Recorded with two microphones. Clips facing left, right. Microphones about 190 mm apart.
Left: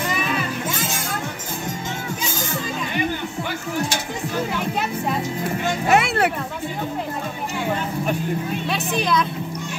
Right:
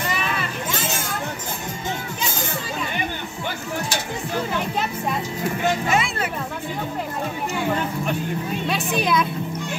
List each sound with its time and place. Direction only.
5.9 s music: 65° left (ahead or behind)
8.6 s speech: 5° right (ahead or behind)